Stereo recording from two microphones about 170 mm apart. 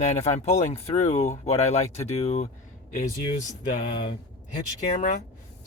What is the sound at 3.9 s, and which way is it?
Speech, 30° left (ahead or behind).